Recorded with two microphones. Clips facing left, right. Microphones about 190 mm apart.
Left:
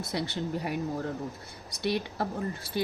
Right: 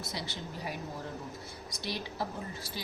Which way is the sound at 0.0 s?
60° left (ahead or behind).